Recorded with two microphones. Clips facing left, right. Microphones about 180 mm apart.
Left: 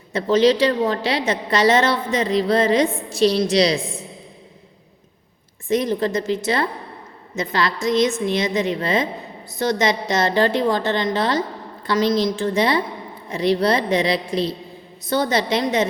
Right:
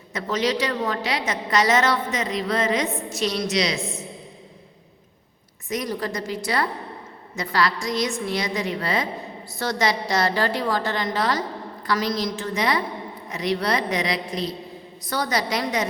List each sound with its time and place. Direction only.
0.1 s a woman's voice: 30° left (ahead or behind)
5.6 s a woman's voice: 25° left (ahead or behind)